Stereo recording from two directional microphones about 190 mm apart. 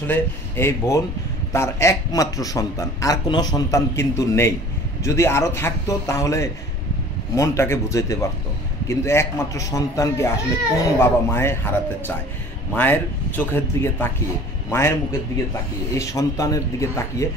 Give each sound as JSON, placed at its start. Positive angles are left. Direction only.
{"t": 0.0, "sound": "a man's voice", "side_deg": 10}
{"t": 12.7, "sound": "a man's voice", "side_deg": 10}